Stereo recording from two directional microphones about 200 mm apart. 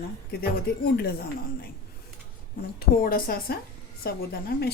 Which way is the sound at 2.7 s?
45° left (ahead or behind).